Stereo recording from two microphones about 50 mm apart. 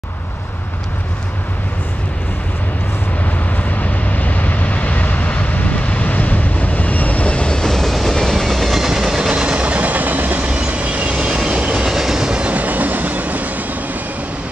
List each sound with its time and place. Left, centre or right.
3.5 s vehicle: left; by 8.8 s centre
8.8 s train: centre
11.8 s train: centre
12.3 s train: right